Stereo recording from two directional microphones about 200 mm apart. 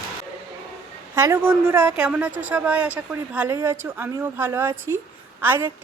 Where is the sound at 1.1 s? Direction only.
15° right (ahead or behind).